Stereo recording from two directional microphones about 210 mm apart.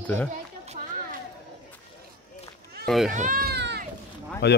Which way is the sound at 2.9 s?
Centre (ahead or behind).